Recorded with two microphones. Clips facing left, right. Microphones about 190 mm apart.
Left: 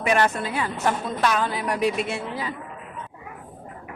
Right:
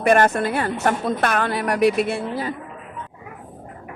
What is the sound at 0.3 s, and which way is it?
A woman's voice, 60° right (ahead or behind).